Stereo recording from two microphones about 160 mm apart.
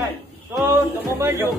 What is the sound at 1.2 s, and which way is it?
Speech, 15° right (ahead or behind).